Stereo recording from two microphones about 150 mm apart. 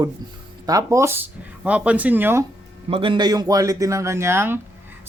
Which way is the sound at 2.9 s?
35° right (ahead or behind).